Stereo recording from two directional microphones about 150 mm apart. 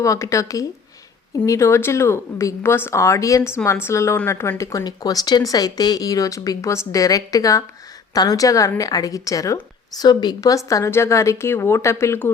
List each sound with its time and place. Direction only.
0.0 s speech: 20° left (ahead or behind)